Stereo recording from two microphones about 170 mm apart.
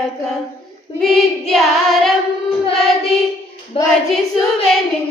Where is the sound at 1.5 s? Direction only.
Centre (ahead or behind).